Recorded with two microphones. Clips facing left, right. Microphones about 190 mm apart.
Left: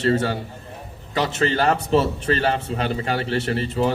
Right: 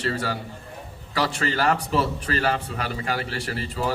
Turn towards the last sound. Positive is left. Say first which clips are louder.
# left 6 dB
turn(degrees=25)  # may be behind; listen again after turning